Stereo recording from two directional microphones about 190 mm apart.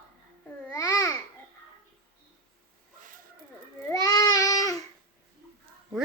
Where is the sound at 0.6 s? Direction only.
15° left (ahead or behind).